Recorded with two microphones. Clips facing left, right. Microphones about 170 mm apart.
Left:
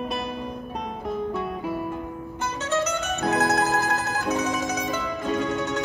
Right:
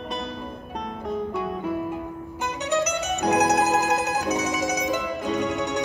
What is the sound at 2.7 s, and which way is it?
Mandolin, 15° right (ahead or behind).